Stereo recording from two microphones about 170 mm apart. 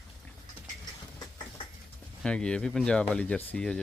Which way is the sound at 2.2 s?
5° left (ahead or behind).